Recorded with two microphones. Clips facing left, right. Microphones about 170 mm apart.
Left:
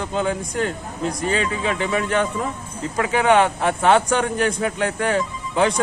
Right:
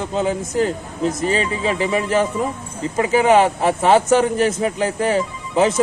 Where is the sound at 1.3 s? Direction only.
30° right (ahead or behind).